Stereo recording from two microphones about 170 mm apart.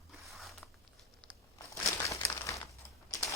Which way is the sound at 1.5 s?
20° left (ahead or behind).